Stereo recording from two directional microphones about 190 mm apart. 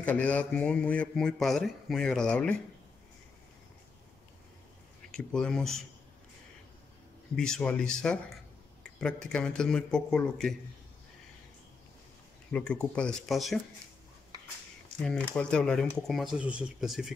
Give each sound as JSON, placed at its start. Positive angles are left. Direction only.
{"t": 0.0, "sound": "speech", "side_deg": 10}
{"t": 5.1, "sound": "speech", "side_deg": 5}
{"t": 7.3, "sound": "speech", "side_deg": 5}
{"t": 12.4, "sound": "speech", "side_deg": 5}
{"t": 15.3, "sound": "speech", "side_deg": 5}